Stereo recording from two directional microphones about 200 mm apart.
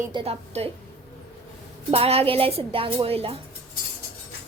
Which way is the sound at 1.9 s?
30° right (ahead or behind).